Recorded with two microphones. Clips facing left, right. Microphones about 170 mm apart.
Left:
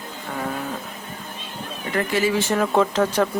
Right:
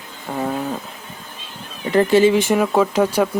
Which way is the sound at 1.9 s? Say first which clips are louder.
Right 8 dB; 30° right (ahead or behind).